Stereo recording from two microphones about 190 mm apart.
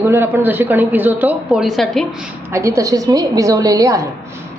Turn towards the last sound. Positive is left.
turn(degrees=-15)  # may be behind; listen again after turning